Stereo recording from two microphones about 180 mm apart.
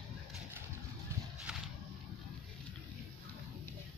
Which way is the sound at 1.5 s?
5° right (ahead or behind).